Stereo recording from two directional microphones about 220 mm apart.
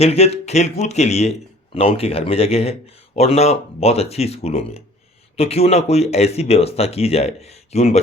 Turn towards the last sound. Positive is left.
turn(degrees=30)  # may be behind; listen again after turning